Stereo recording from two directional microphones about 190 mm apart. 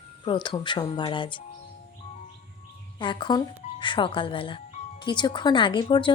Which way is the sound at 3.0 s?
25° left (ahead or behind).